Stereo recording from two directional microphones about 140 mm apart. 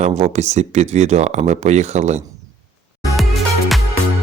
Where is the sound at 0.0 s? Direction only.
55° right (ahead or behind).